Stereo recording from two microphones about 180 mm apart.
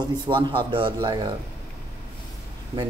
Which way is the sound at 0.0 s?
25° right (ahead or behind).